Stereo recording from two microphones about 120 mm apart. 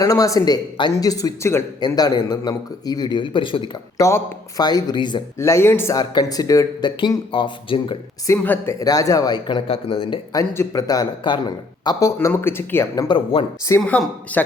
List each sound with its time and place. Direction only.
0.0 s a man's voice: 30° left (ahead or behind)
2.0 s a man's voice: 35° left (ahead or behind)
3.9 s a man's voice: 25° left (ahead or behind)
5.4 s speech: 20° left (ahead or behind)
6.0 s a man's voice: 35° left (ahead or behind)
7.3 s speech: 45° left (ahead or behind)
8.3 s a man's voice: 20° left (ahead or behind); by 10.2 s 45° left (ahead or behind)
10.3 s speech: 25° left (ahead or behind)
13.1 s speech: 45° left (ahead or behind)
13.7 s speech: 15° left (ahead or behind)